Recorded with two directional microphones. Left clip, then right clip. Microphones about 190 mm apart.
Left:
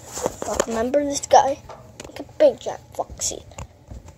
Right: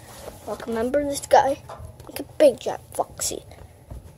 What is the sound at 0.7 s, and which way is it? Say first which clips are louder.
Speech: right 1 dB; centre (ahead or behind).